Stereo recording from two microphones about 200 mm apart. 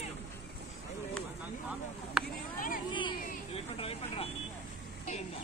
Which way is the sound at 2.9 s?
25° left (ahead or behind).